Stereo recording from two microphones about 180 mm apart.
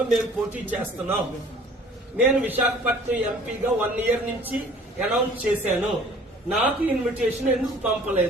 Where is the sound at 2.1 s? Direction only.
10° right (ahead or behind).